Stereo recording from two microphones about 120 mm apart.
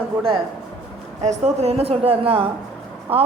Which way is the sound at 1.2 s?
70° right (ahead or behind).